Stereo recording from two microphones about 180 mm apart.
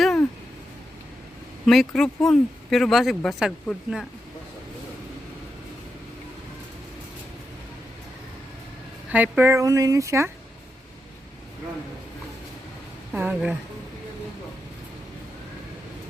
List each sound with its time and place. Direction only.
0.0 s a sound: 5° left (ahead or behind)
1.6 s speech: centre (ahead or behind)
9.1 s speech: 10° right (ahead or behind)
13.1 s speech: 10° right (ahead or behind)